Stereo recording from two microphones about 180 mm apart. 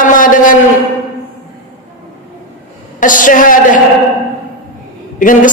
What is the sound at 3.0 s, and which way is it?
Speech, 45° left (ahead or behind).